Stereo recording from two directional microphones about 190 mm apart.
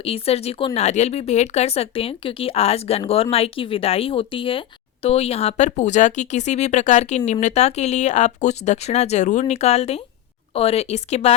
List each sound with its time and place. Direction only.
0.0 s speech: 30° left (ahead or behind)